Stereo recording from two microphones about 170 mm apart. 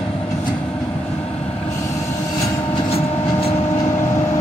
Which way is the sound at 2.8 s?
35° left (ahead or behind).